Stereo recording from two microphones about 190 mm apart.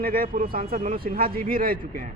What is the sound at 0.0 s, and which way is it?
Speech, 50° right (ahead or behind).